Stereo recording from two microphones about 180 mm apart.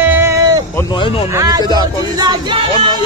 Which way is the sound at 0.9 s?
30° left (ahead or behind).